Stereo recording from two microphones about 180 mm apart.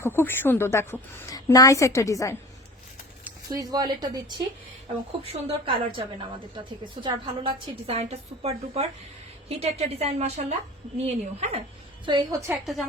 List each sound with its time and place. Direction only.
0.0 s a woman's voice: 10° left (ahead or behind)
3.5 s a woman's voice: 20° right (ahead or behind); by 11.6 s 35° right (ahead or behind)
12.0 s speech: 20° right (ahead or behind)